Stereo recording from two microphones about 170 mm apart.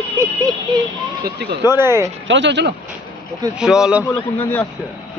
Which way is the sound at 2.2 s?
90° right.